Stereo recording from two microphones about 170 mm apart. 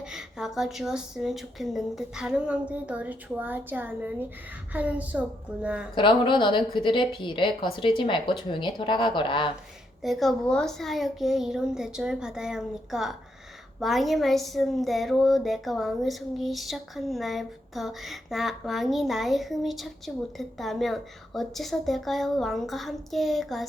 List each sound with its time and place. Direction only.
0.0 s a woman's voice: 5° right (ahead or behind)
5.9 s a woman's voice: 30° left (ahead or behind)
10.0 s a woman's voice: centre (ahead or behind)